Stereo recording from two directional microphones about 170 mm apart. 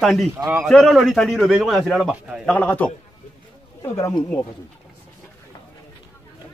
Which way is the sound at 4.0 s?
20° left (ahead or behind).